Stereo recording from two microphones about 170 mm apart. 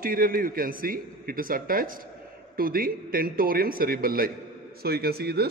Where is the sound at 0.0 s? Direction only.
60° right (ahead or behind).